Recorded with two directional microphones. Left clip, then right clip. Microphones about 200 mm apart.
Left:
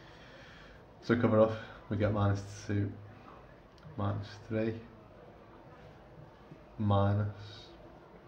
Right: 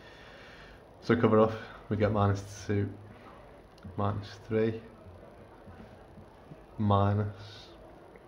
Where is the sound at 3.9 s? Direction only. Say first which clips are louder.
Right 5 dB; 30° right (ahead or behind).